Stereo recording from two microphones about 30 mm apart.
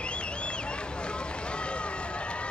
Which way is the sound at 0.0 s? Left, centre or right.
Left.